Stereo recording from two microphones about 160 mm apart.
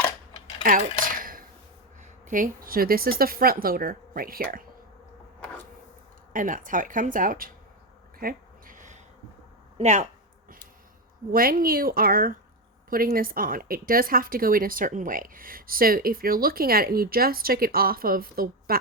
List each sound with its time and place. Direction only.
0.6 s cutlery: 60° right (ahead or behind)
1.1 s a sound: 60° right (ahead or behind)
2.2 s a woman's voice: 55° right (ahead or behind)
6.3 s a woman's voice: 55° right (ahead or behind)
8.2 s a sound: 65° right (ahead or behind)
9.7 s speech: 45° right (ahead or behind)
11.3 s a woman's voice: 65° right (ahead or behind)